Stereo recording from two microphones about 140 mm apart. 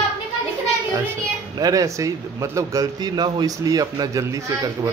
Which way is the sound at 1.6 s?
25° right (ahead or behind).